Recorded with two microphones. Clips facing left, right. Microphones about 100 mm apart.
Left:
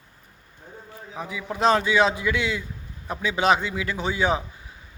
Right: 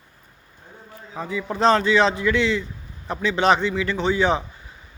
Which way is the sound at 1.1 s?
10° left (ahead or behind).